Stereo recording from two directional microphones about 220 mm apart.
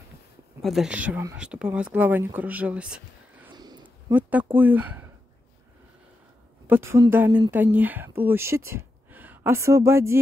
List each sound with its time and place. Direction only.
0.6 s speech: centre (ahead or behind)
3.5 s a sound: 20° right (ahead or behind)
4.1 s speech: 5° right (ahead or behind)
6.7 s speech: 10° right (ahead or behind)